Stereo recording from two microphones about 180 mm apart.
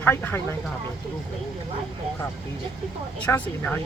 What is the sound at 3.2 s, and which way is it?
Speech, 10° left (ahead or behind).